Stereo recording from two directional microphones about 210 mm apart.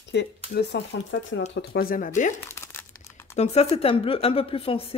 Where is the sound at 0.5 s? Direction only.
55° left (ahead or behind).